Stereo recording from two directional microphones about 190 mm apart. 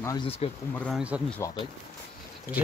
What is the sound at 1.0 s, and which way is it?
Speech, 5° right (ahead or behind).